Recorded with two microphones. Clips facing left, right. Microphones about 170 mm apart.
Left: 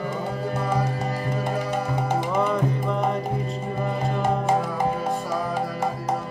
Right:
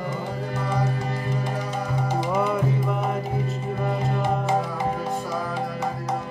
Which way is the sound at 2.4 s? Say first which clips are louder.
Even; 5° right (ahead or behind).